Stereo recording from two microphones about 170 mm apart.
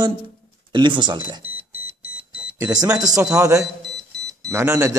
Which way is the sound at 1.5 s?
10° right (ahead or behind).